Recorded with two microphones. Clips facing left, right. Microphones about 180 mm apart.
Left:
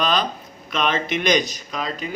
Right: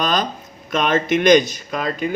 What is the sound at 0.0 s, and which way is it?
Speech, 45° right (ahead or behind).